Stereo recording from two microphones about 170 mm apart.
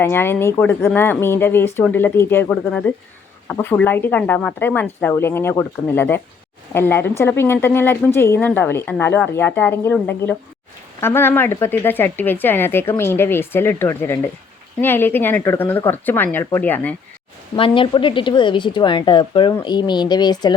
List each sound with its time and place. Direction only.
0.0 s a woman's voice: 15° left (ahead or behind)
17.6 s speech: 30° left (ahead or behind)